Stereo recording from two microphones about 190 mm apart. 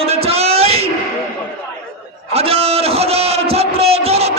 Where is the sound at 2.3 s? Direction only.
30° right (ahead or behind).